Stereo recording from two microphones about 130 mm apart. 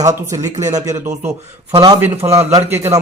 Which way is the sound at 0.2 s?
20° right (ahead or behind).